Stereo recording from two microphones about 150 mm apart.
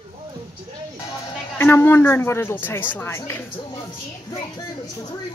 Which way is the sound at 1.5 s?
15° left (ahead or behind).